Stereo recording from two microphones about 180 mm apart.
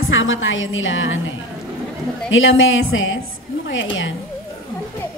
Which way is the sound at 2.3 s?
90° left.